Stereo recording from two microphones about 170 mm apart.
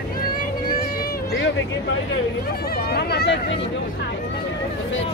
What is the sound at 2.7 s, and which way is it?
Speech, 65° left (ahead or behind).